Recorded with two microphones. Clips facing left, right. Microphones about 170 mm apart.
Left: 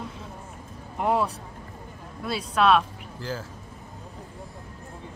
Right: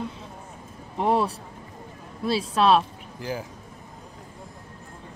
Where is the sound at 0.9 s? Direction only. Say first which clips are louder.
Right 2 dB; 35° right (ahead or behind).